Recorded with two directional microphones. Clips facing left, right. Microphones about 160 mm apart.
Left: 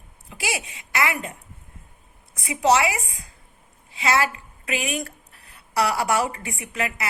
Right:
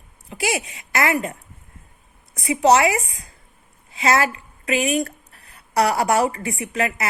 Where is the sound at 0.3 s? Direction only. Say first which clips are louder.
Right 6 dB; 35° right (ahead or behind).